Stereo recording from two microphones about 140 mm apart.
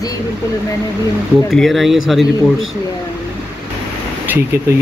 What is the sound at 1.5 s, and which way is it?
Speech, centre (ahead or behind).